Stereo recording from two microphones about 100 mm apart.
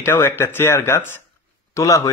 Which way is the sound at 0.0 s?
25° left (ahead or behind).